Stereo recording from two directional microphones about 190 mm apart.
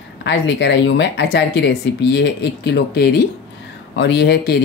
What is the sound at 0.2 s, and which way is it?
Speech, 65° left (ahead or behind).